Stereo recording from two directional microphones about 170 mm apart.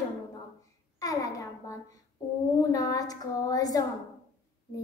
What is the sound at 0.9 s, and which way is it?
A woman's voice, 20° left (ahead or behind).